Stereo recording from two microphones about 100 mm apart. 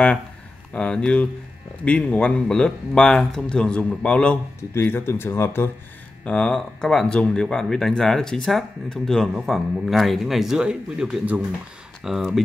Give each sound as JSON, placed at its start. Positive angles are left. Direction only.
{"t": 0.7, "sound": "speech", "side_deg": 10}
{"t": 4.7, "sound": "speech", "side_deg": 20}
{"t": 6.2, "sound": "speech", "side_deg": 10}